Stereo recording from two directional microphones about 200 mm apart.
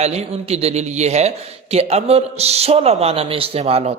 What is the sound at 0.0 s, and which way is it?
A man's voice, 30° right (ahead or behind).